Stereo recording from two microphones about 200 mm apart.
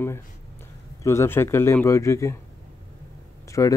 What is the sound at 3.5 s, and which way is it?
Speech, 15° left (ahead or behind).